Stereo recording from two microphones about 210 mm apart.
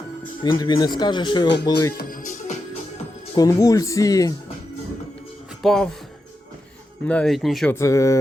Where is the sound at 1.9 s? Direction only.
40° left (ahead or behind).